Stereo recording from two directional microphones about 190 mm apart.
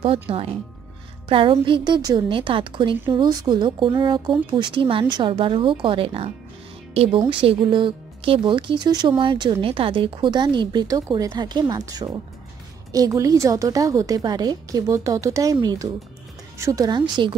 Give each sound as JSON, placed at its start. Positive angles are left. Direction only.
{"t": 0.0, "sound": "a woman's voice", "side_deg": -30}